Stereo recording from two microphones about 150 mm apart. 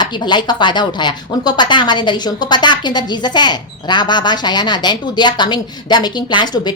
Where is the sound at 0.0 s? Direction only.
30° left (ahead or behind).